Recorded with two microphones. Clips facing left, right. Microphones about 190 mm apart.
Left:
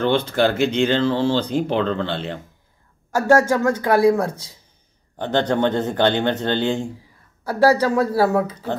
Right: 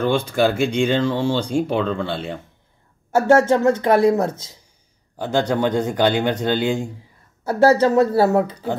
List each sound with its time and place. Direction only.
0.0 s speech: 10° right (ahead or behind)
3.2 s speech: 25° right (ahead or behind)
5.1 s speech: 10° right (ahead or behind)
7.4 s speech: 25° right (ahead or behind)